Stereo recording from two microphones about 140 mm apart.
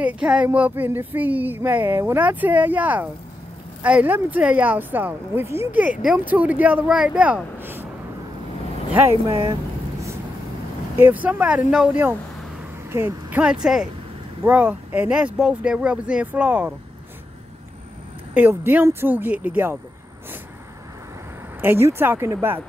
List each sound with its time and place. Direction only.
0.0 s speech: 10° right (ahead or behind)
11.0 s speech: 10° right (ahead or behind)
18.3 s speech: 15° right (ahead or behind)
21.5 s speech: 15° right (ahead or behind)